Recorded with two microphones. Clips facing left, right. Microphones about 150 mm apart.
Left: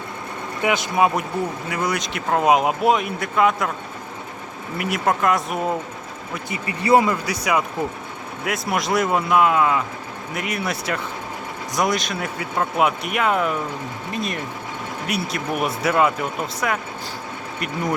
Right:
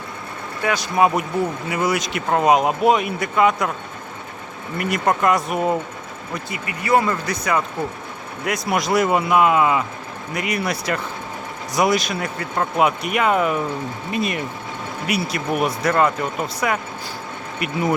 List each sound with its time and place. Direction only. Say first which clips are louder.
0.6 s speech: left 1 dB; 20° left (ahead or behind)
0.9 s a man's voice: right 5 dB; centre (ahead or behind)
4.8 s a man's voice: right 1 dB; 5° left (ahead or behind)
6.5 s speech: left 2 dB; 25° left (ahead or behind)
7.0 s a man's voice: even; 10° left (ahead or behind)